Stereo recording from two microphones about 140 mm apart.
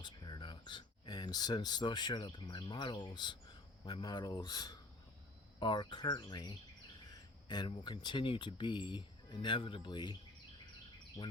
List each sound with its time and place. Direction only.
0.0 s speech: 35° left (ahead or behind)